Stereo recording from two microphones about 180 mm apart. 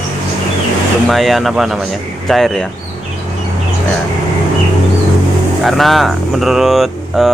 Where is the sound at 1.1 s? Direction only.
Centre (ahead or behind).